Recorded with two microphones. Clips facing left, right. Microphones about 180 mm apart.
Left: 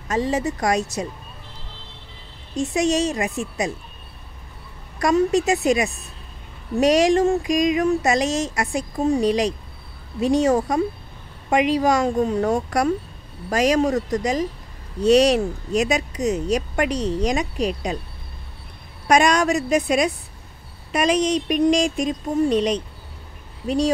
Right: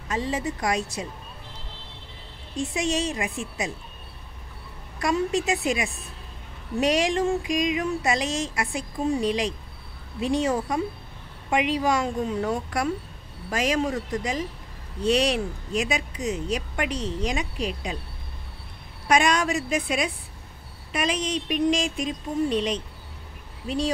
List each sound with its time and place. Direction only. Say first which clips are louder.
0.1 s speech: left 6 dB; 45° left (ahead or behind)
2.5 s speech: left 6 dB; 45° left (ahead or behind)
4.9 s speech: left 6 dB; 45° left (ahead or behind)
19.0 s speech: left 5 dB; 45° left (ahead or behind)